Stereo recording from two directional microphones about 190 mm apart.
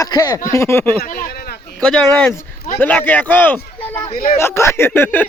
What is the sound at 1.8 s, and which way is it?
Speech, 5° left (ahead or behind).